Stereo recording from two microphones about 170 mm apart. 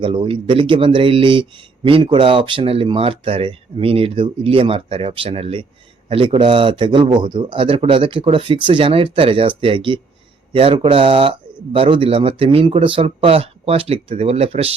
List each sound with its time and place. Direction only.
0.0 s speech: 30° right (ahead or behind)